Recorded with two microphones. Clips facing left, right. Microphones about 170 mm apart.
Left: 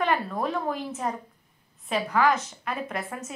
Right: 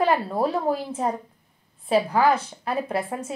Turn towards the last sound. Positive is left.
turn(degrees=-30)  # may be behind; listen again after turning